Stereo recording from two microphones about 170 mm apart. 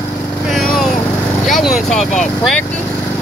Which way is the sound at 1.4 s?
Centre (ahead or behind).